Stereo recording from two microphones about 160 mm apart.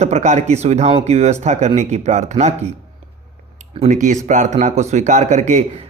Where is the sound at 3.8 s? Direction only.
50° right (ahead or behind).